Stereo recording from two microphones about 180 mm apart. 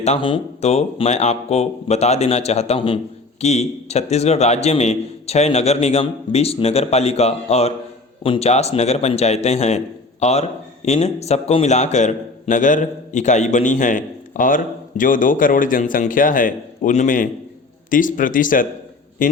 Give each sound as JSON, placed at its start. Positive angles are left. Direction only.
{"t": 0.0, "sound": "a man's voice", "side_deg": 35}